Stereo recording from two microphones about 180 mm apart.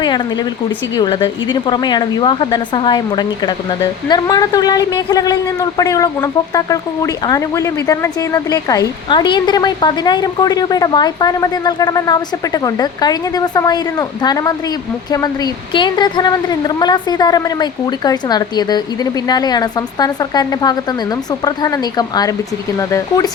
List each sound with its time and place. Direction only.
0.9 s a woman's voice: 25° left (ahead or behind)
15.7 s a woman's voice: 25° left (ahead or behind)